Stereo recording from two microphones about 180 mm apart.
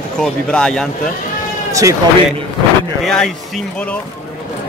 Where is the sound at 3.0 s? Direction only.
Centre (ahead or behind).